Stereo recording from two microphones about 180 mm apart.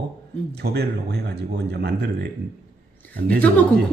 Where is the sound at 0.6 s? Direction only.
65° right (ahead or behind).